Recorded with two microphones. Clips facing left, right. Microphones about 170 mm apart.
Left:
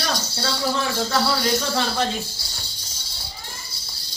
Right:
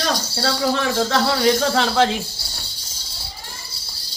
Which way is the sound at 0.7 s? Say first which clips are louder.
Right 3 dB; 75° right (ahead or behind).